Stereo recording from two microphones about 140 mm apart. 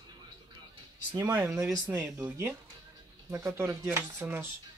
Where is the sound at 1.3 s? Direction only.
10° right (ahead or behind).